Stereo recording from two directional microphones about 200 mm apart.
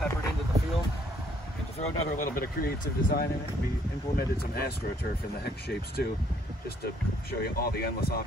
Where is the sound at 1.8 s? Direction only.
45° left (ahead or behind).